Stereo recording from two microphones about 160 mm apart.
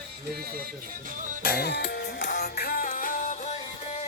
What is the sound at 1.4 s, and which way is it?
Music, 65° left (ahead or behind).